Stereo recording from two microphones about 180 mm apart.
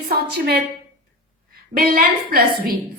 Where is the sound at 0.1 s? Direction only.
60° right (ahead or behind).